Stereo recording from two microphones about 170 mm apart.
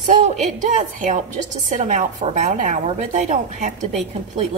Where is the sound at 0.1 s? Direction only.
45° right (ahead or behind).